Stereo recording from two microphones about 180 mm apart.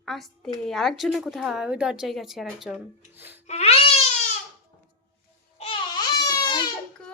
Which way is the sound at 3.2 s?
10° right (ahead or behind).